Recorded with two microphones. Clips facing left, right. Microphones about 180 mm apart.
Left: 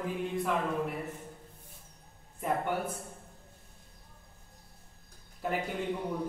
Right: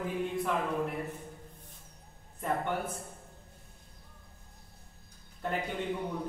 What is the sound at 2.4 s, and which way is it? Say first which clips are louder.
Speech: left 1 dB; 5° left (ahead or behind).